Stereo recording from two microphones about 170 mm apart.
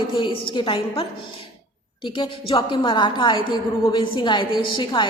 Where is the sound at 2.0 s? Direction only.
30° left (ahead or behind).